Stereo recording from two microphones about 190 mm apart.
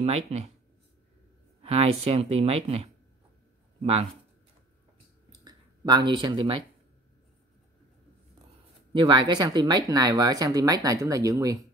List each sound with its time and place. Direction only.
0.0 s speech: 35° right (ahead or behind)
1.6 s speech: 30° right (ahead or behind)
5.3 s clicking: 20° right (ahead or behind)
8.9 s speech: 25° right (ahead or behind)